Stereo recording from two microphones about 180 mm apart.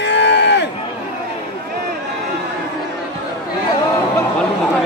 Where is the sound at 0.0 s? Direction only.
75° left (ahead or behind).